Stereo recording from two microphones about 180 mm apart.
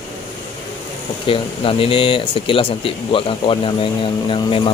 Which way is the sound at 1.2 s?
30° left (ahead or behind).